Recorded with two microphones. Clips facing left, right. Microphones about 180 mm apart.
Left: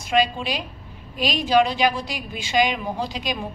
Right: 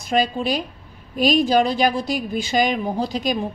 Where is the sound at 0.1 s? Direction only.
45° right (ahead or behind).